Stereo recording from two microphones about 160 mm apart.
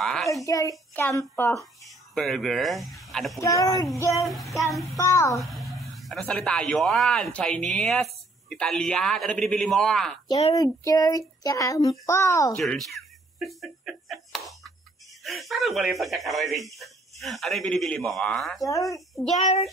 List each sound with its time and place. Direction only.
0.0 s a sound: 5° left (ahead or behind)
0.5 s speech: 20° left (ahead or behind)
1.9 s a child's voice: centre (ahead or behind)
3.3 s speech: 20° left (ahead or behind)
4.2 s speech: centre (ahead or behind)
4.9 s speech: 20° left (ahead or behind)
5.4 s speech: centre (ahead or behind)
10.5 s speech: 20° left (ahead or behind)
12.5 s speech: centre (ahead or behind)
19.3 s a child's voice: 40° left (ahead or behind)